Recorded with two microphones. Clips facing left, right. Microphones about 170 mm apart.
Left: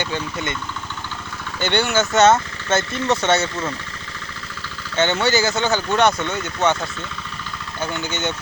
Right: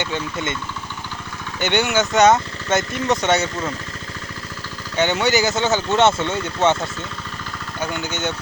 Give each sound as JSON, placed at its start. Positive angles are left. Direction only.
{"t": 0.0, "sound": "speech", "side_deg": -20}
{"t": 1.5, "sound": "speech", "side_deg": -15}
{"t": 4.9, "sound": "speech", "side_deg": -15}
{"t": 7.8, "sound": "speech", "side_deg": -15}